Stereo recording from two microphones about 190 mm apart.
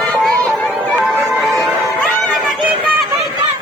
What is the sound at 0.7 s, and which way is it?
Music, 5° right (ahead or behind).